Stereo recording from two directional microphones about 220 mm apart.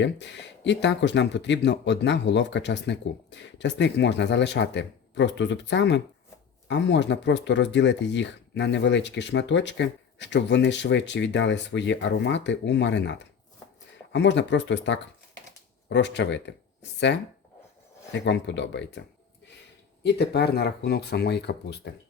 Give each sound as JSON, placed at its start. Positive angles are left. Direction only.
{"t": 0.0, "sound": "speech", "side_deg": 55}
{"t": 18.1, "sound": "speech", "side_deg": 55}